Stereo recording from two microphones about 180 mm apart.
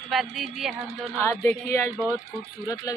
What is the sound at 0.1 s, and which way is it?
Speech, centre (ahead or behind).